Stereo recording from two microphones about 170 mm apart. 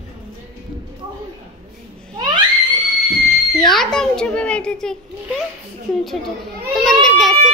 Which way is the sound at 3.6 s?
Centre (ahead or behind).